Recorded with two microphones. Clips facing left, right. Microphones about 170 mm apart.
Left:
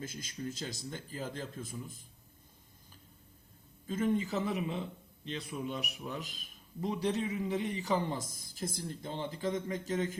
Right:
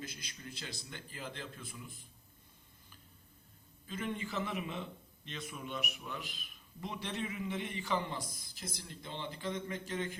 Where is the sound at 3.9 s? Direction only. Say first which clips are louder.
Left 8 dB; 45° left (ahead or behind).